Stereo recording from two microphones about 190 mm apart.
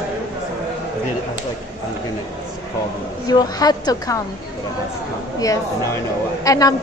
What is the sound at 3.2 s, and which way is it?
Speech, 20° left (ahead or behind).